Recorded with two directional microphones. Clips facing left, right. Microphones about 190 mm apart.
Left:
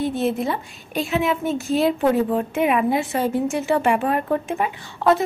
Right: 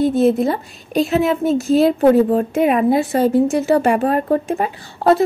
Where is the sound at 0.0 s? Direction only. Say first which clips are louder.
Right 7 dB; 40° right (ahead or behind).